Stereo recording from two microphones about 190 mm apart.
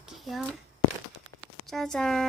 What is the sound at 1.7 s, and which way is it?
Speech, centre (ahead or behind).